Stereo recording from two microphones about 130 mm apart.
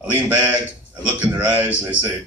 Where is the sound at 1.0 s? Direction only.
10° right (ahead or behind).